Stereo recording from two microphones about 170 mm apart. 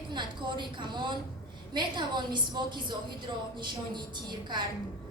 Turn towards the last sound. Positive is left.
turn(degrees=-25)  # may be behind; listen again after turning